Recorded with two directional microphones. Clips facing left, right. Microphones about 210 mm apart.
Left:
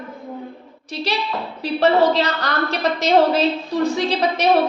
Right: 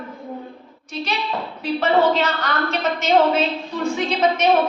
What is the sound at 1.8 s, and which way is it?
A woman's voice, 35° left (ahead or behind).